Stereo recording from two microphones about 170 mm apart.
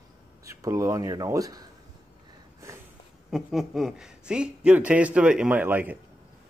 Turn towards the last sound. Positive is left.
turn(degrees=-10)  # may be behind; listen again after turning